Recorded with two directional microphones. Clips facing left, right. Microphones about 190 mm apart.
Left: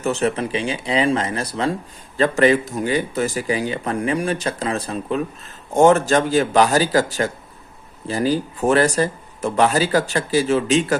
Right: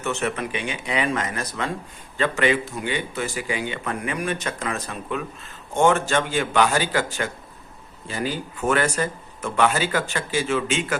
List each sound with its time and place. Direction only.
0.0 s speech: 35° left (ahead or behind)